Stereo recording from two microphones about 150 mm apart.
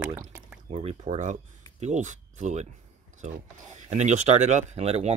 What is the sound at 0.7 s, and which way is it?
Speech, 45° right (ahead or behind).